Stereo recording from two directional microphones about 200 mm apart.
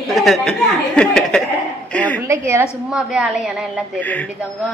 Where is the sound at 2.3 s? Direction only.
10° right (ahead or behind).